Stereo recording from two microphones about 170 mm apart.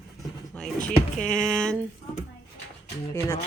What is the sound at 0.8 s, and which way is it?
Speech, 5° left (ahead or behind).